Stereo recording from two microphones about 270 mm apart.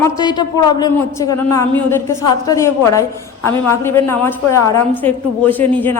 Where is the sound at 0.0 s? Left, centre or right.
Centre.